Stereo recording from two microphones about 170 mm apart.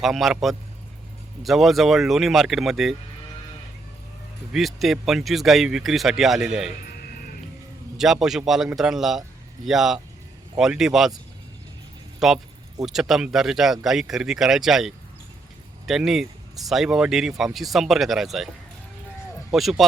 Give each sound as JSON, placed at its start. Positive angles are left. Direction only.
{"t": 0.0, "sound": "speech", "side_deg": 0}
{"t": 4.5, "sound": "speech", "side_deg": 0}
{"t": 6.8, "sound": "music", "side_deg": 60}
{"t": 7.9, "sound": "speech", "side_deg": 0}
{"t": 12.2, "sound": "speech", "side_deg": 0}